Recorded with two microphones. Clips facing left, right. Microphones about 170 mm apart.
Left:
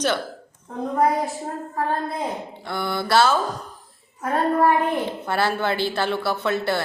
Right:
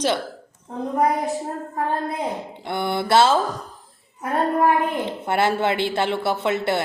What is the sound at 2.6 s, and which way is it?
Speech, 25° right (ahead or behind).